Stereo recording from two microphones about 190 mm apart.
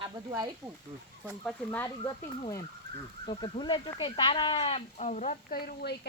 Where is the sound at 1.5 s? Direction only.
5° left (ahead or behind).